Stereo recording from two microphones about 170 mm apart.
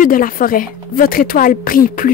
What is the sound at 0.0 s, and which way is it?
Speech, 55° left (ahead or behind).